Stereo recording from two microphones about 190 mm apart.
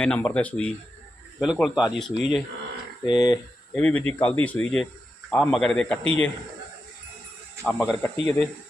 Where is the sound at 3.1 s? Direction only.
20° left (ahead or behind).